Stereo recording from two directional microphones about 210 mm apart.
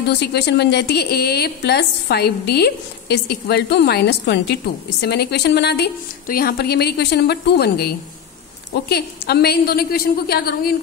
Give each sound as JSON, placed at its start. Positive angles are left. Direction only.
{"t": 0.2, "sound": "a woman's voice", "side_deg": 55}